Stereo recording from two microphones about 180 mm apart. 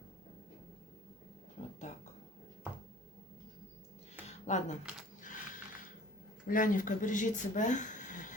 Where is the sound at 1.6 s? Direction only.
35° left (ahead or behind).